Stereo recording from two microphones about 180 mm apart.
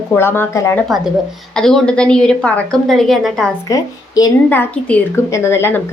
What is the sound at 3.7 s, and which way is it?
A woman's voice, 20° left (ahead or behind).